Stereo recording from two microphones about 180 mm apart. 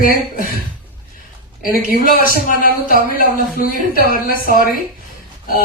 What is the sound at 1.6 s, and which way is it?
Speech, 55° left (ahead or behind).